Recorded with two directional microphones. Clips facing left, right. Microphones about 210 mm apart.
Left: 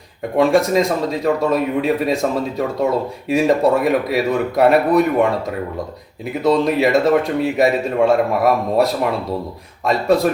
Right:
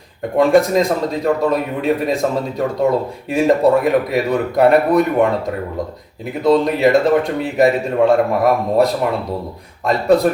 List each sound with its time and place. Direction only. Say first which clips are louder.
0.3 s a man's voice: right 2 dB; centre (ahead or behind)
6.4 s a man's voice: right 2 dB; centre (ahead or behind)